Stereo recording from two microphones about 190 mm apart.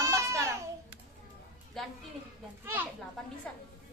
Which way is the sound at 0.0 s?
15° right (ahead or behind).